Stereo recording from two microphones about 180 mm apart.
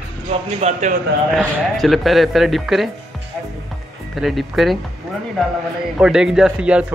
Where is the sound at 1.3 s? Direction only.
Centre (ahead or behind).